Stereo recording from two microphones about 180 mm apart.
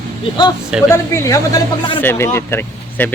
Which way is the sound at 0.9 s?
15° left (ahead or behind).